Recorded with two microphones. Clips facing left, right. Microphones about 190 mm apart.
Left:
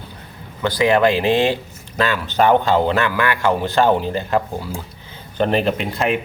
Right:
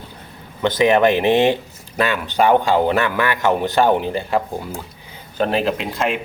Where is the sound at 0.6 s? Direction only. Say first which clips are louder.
Right 1 dB; 20° right (ahead or behind).